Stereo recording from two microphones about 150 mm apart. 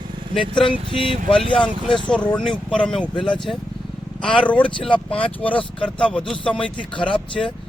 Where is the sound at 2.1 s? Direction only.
5° left (ahead or behind).